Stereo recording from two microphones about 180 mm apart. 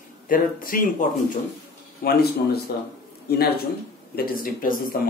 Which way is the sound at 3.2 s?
60° left (ahead or behind).